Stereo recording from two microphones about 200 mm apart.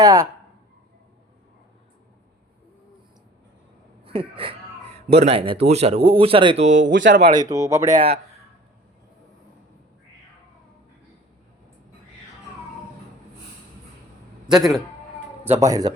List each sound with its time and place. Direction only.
0.0 s speech: 15° right (ahead or behind)
4.0 s speech: 25° right (ahead or behind)
6.7 s speech: 65° right (ahead or behind)
7.3 s speech: 15° right (ahead or behind)
7.9 s speech: 35° right (ahead or behind)
14.4 s a man's voice: centre (ahead or behind)
15.4 s speech: 15° right (ahead or behind)